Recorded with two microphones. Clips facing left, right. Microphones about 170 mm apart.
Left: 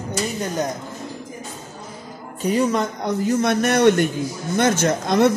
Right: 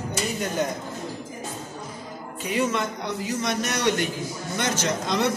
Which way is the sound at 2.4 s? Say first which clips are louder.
Left 6 dB; 40° left (ahead or behind).